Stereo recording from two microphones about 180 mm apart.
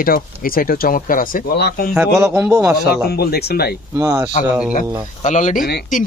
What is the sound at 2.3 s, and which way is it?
Speech, 15° right (ahead or behind).